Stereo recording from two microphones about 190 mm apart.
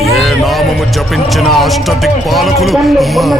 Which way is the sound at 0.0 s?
Centre (ahead or behind).